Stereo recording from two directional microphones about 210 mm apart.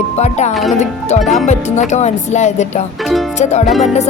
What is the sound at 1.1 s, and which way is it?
Speech, 35° left (ahead or behind).